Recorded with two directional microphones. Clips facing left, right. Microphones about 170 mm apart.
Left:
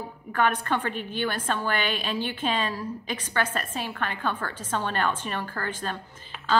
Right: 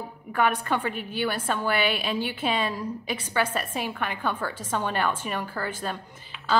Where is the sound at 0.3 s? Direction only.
10° right (ahead or behind).